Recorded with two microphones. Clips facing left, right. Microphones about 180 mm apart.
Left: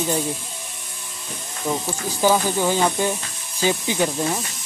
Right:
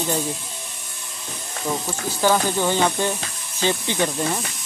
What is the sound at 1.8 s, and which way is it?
Speech, 5° left (ahead or behind).